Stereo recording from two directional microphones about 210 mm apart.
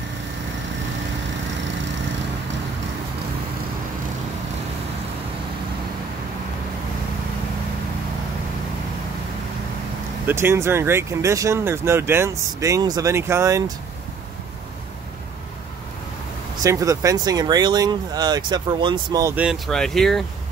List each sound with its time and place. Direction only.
10.2 s speech: 10° right (ahead or behind)
16.6 s speech: 15° right (ahead or behind); by 20.2 s centre (ahead or behind)